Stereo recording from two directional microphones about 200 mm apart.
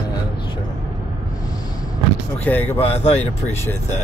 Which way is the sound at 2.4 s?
10° left (ahead or behind).